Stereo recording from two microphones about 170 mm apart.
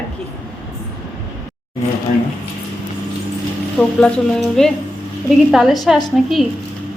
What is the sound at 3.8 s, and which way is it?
A woman's voice, 5° left (ahead or behind).